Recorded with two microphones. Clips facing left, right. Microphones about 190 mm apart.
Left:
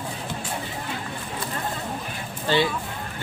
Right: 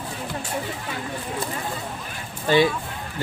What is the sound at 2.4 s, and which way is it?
Speech, 15° right (ahead or behind).